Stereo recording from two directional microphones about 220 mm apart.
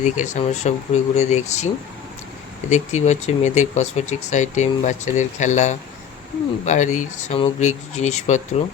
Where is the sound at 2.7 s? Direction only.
30° left (ahead or behind).